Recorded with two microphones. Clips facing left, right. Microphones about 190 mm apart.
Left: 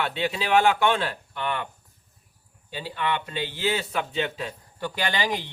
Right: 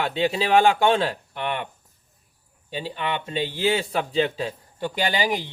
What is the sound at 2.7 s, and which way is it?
Speech, 20° right (ahead or behind).